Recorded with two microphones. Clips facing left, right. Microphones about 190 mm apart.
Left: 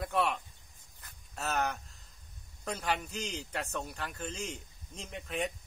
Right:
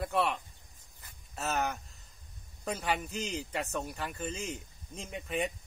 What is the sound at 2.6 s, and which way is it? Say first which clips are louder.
Speech: right 1 dB; 5° right (ahead or behind).